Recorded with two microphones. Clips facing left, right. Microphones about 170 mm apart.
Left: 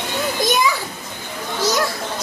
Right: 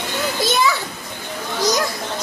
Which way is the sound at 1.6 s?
15° right (ahead or behind).